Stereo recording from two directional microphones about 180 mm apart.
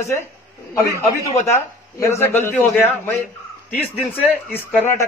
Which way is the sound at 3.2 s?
10° left (ahead or behind).